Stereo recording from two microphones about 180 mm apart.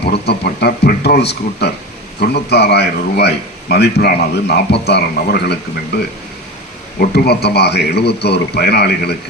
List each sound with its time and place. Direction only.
0.0 s a man's voice: 65° left (ahead or behind)
7.0 s a man's voice: 60° left (ahead or behind)